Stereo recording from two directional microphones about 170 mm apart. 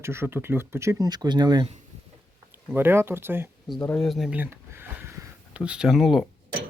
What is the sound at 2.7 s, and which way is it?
Speech, 15° right (ahead or behind).